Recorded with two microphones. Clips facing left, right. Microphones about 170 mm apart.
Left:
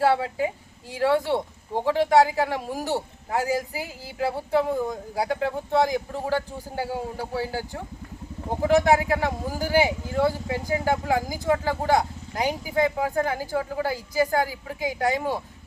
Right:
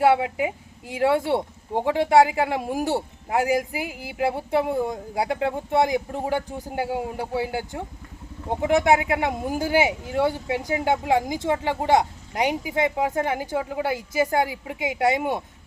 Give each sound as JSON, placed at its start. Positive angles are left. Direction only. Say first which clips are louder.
{"t": 0.1, "sound": "speech", "louder": "right 2 dB", "side_deg": -15}